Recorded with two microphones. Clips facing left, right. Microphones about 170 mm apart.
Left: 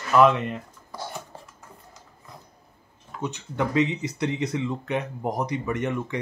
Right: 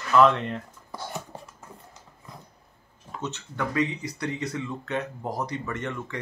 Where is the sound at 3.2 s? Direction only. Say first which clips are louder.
Left 4 dB; 15° left (ahead or behind).